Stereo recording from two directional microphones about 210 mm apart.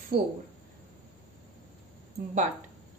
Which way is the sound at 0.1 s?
45° right (ahead or behind).